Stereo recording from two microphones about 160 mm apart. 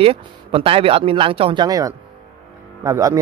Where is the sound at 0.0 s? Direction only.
35° right (ahead or behind).